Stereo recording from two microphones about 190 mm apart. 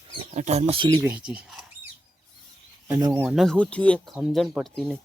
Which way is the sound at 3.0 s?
10° right (ahead or behind).